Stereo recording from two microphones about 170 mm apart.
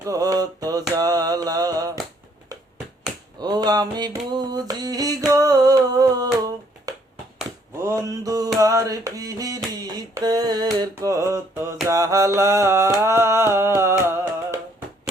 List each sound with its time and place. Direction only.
0.0 s mantra: 20° right (ahead or behind)
3.4 s music: 25° right (ahead or behind)
4.3 s a sound: 25° right (ahead or behind)
7.8 s music: 15° right (ahead or behind)
9.8 s mantra: 25° right (ahead or behind)